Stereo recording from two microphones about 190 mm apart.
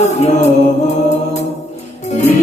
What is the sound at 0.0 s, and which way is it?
Music, 35° left (ahead or behind).